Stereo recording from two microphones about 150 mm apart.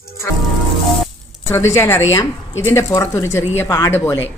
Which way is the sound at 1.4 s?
15° left (ahead or behind).